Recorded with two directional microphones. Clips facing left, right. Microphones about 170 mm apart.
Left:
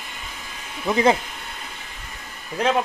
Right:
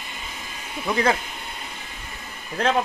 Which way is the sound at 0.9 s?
20° left (ahead or behind).